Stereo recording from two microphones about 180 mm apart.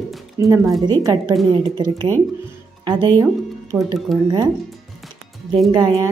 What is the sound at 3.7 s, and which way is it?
Speech, 10° right (ahead or behind).